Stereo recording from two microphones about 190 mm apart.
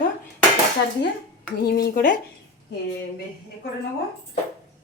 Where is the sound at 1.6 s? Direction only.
55° left (ahead or behind).